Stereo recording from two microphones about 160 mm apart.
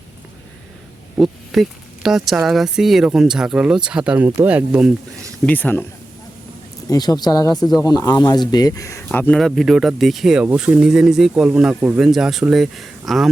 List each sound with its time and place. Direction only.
1.1 s speech: centre (ahead or behind)
5.5 s speech: 10° left (ahead or behind)
6.9 s speech: 25° left (ahead or behind)
9.0 s speech: 5° left (ahead or behind); by 12.0 s 10° right (ahead or behind)
12.0 s speech: centre (ahead or behind)